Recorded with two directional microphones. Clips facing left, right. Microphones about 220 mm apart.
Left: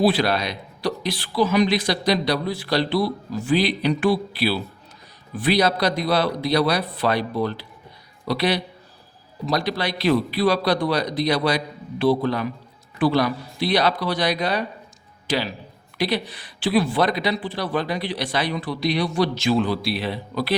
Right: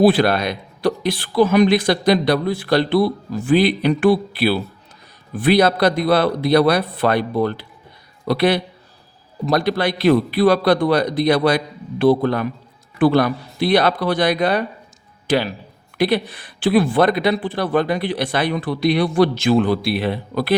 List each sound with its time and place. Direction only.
0.0 s speech: 50° right (ahead or behind)